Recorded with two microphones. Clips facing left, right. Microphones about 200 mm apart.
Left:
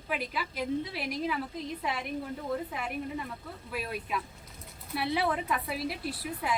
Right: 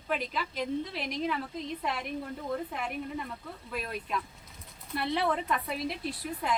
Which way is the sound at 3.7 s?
5° left (ahead or behind).